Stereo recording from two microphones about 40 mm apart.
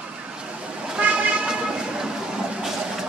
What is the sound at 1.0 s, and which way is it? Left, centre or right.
Vehicle, right.